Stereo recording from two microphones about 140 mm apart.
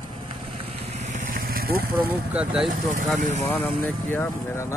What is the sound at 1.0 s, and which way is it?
Vehicle, 75° right (ahead or behind).